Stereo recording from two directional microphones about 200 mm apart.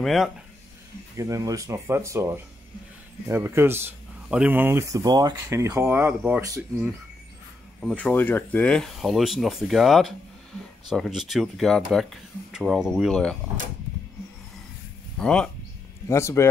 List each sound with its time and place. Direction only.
0.0 s speech: centre (ahead or behind)
1.1 s speech: 15° right (ahead or behind)
7.8 s speech: 5° left (ahead or behind)
15.1 s speech: 5° left (ahead or behind)